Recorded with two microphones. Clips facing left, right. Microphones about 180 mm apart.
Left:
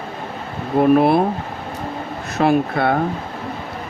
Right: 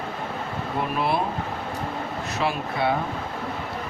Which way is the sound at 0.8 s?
55° left (ahead or behind).